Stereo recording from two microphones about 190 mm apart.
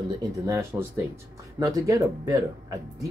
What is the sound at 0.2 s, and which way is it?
Speech, 15° right (ahead or behind).